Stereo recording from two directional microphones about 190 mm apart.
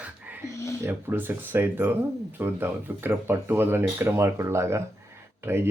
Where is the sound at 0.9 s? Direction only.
10° right (ahead or behind).